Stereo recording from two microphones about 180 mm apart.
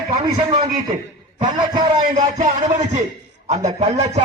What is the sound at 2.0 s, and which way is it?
A man's voice, 45° right (ahead or behind).